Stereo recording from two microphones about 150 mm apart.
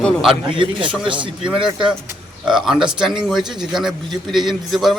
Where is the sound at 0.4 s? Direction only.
35° right (ahead or behind).